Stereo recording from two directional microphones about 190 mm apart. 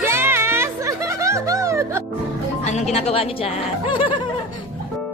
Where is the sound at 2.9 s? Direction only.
30° left (ahead or behind).